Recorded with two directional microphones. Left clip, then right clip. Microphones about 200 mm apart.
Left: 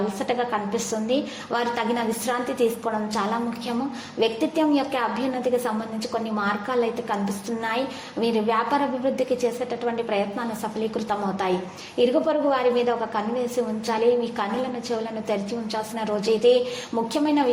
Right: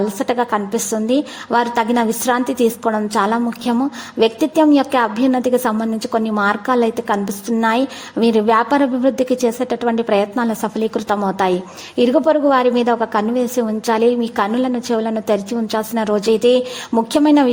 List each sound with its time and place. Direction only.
0.2 s a woman's voice: 40° right (ahead or behind)
8.2 s a woman's voice: 45° right (ahead or behind)